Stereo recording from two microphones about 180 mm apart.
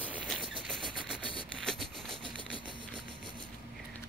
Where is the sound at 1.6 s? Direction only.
Centre (ahead or behind).